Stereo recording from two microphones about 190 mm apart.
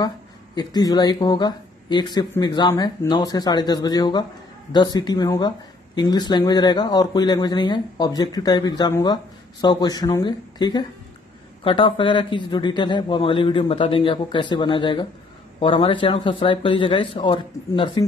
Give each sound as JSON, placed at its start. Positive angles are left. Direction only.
{"t": 0.6, "sound": "speech", "side_deg": 20}